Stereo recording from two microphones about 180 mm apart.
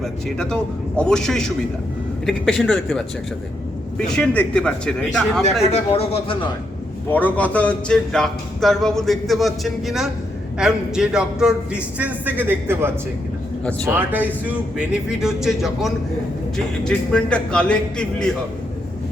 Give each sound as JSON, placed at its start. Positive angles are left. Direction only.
{"t": 0.0, "sound": "speech", "side_deg": 5}
{"t": 5.7, "sound": "speech", "side_deg": 35}
{"t": 7.1, "sound": "speech", "side_deg": 10}
{"t": 13.7, "sound": "speech", "side_deg": 5}
{"t": 13.9, "sound": "speech", "side_deg": -10}